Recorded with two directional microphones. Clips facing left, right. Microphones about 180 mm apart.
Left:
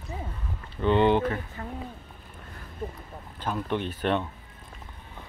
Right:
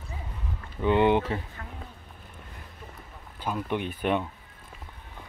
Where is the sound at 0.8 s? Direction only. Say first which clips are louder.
Even; 10° right (ahead or behind).